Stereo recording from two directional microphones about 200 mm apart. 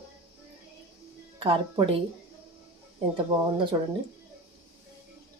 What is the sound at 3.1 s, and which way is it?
Speech, 25° right (ahead or behind).